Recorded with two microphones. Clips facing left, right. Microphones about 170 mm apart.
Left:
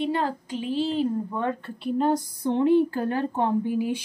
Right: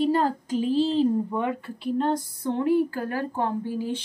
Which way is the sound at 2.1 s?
15° left (ahead or behind).